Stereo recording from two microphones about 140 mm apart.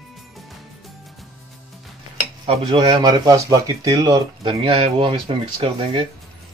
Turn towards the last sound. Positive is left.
turn(degrees=-40)  # may be behind; listen again after turning